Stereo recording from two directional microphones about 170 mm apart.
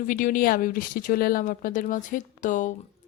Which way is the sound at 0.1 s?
55° left (ahead or behind).